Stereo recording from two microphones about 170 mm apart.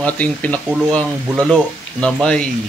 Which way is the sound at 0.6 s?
5° right (ahead or behind).